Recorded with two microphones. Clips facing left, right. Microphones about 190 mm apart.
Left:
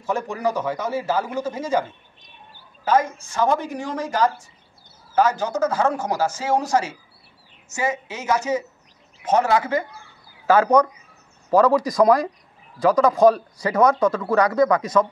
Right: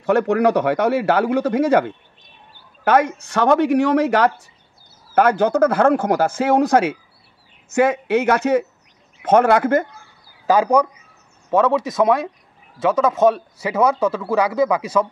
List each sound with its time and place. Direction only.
0.0 s speech: 65° right (ahead or behind); by 9.8 s 50° right (ahead or behind)
10.4 s speech: 15° right (ahead or behind)